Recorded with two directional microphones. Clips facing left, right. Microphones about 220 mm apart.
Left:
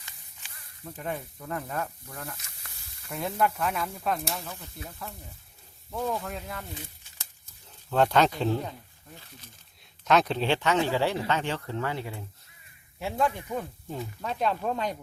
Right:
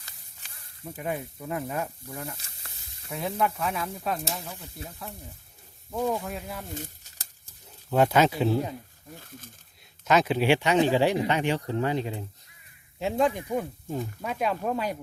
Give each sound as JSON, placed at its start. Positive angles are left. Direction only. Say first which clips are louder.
{"t": 0.0, "sound": "snake", "louder": "left 1 dB", "side_deg": -40}
{"t": 0.9, "sound": "speech", "louder": "right 3 dB", "side_deg": -10}
{"t": 2.2, "sound": "snake", "louder": "right 2 dB", "side_deg": -30}
{"t": 3.1, "sound": "speech", "louder": "even", "side_deg": 0}
{"t": 5.9, "sound": "speech", "louder": "right 3 dB", "side_deg": -15}
{"t": 6.7, "sound": "crumpling", "louder": "right 6 dB", "side_deg": -40}
{"t": 7.9, "sound": "speech", "louder": "right 2 dB", "side_deg": -10}
{"t": 9.1, "sound": "speech", "louder": "right 5 dB", "side_deg": -50}
{"t": 10.0, "sound": "speech", "louder": "right 1 dB", "side_deg": -5}